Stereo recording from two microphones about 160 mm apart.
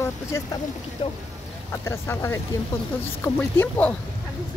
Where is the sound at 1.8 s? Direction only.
15° left (ahead or behind).